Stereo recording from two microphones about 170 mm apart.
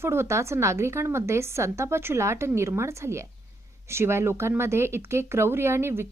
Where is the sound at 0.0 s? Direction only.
15° right (ahead or behind).